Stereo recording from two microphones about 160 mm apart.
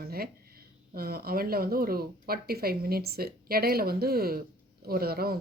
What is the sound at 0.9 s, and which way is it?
Speech, 70° right (ahead or behind).